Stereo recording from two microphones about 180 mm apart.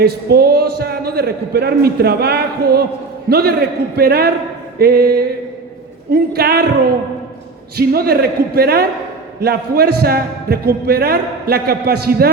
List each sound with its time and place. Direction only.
0.0 s a man's voice: 60° right (ahead or behind)
7.8 s a man's voice: 60° right (ahead or behind)